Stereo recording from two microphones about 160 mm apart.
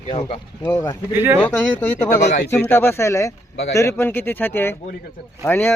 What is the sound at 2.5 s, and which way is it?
Speech, 15° left (ahead or behind).